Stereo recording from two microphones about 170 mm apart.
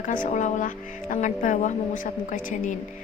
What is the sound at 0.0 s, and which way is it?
A woman's voice, 50° left (ahead or behind).